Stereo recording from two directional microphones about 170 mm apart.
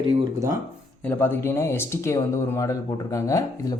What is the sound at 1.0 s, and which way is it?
Speech, 10° left (ahead or behind).